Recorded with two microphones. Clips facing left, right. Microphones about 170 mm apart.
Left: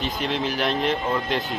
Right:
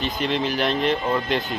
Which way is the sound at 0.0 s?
Centre (ahead or behind).